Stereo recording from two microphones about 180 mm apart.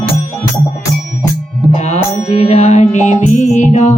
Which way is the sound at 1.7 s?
40° left (ahead or behind).